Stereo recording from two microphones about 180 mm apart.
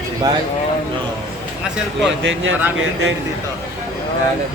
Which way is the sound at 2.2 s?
90° right.